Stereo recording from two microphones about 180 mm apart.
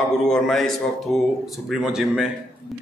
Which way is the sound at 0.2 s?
Centre (ahead or behind).